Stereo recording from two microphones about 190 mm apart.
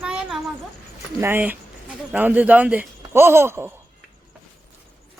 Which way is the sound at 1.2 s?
10° right (ahead or behind).